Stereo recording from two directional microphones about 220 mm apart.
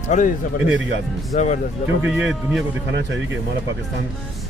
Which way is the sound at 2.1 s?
5° right (ahead or behind).